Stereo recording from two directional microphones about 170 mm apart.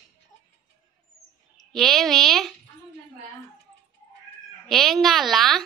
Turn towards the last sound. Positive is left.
turn(degrees=0)  # may be behind; listen again after turning